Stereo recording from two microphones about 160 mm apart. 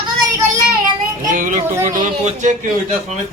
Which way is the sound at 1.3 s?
55° right (ahead or behind).